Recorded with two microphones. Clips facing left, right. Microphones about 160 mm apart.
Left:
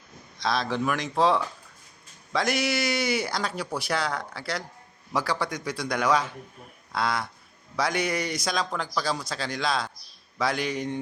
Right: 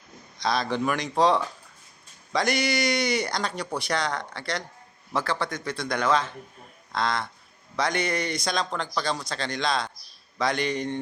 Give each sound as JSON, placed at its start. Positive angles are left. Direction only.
{"t": 0.3, "sound": "a man's voice", "side_deg": 0}